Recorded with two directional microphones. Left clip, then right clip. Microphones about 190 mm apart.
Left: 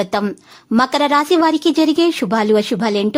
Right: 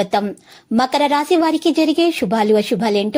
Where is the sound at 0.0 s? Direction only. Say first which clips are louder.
Right 1 dB; 5° left (ahead or behind).